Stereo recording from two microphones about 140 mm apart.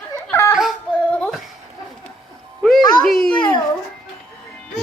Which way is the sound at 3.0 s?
Centre (ahead or behind).